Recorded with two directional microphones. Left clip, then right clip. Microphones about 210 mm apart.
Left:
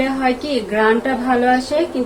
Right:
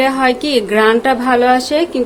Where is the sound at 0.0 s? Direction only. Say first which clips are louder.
Right 5 dB; 60° right (ahead or behind).